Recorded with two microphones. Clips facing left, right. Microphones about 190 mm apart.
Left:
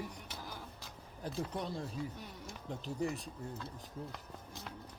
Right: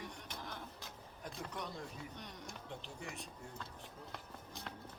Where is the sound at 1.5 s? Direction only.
30° left (ahead or behind).